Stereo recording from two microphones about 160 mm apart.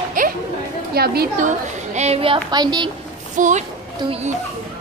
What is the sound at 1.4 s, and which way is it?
A woman's voice, 45° right (ahead or behind).